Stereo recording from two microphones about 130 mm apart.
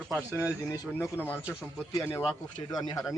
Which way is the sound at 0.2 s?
15° right (ahead or behind).